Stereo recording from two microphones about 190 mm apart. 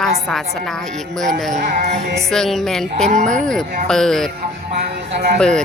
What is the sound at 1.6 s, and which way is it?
Music, 40° right (ahead or behind).